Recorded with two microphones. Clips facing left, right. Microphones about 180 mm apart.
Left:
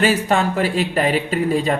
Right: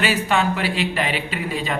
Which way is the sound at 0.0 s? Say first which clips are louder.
Left 3 dB; 45° left (ahead or behind).